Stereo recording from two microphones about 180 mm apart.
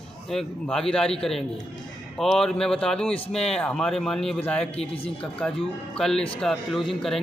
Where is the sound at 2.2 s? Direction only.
Centre (ahead or behind).